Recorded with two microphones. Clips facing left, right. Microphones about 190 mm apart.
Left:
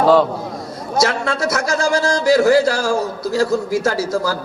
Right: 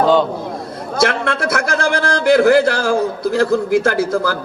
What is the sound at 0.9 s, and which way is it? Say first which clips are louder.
A man's voice: right 1 dB; 55° right (ahead or behind).